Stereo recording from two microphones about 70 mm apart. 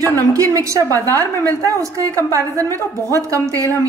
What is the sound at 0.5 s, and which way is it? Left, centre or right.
Cutlery, right.